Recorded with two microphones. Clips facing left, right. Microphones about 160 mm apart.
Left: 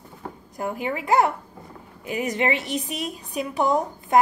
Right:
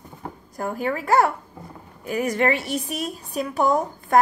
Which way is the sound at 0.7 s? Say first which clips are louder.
Right 5 dB; 40° right (ahead or behind).